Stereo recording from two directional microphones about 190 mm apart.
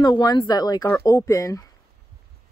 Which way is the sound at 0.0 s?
20° left (ahead or behind).